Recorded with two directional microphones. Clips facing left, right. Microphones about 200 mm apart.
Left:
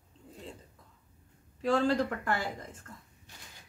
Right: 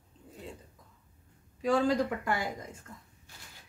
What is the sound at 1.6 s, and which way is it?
Speech, 10° right (ahead or behind).